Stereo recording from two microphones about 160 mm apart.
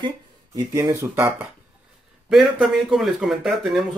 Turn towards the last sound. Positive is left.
turn(degrees=0)  # may be behind; listen again after turning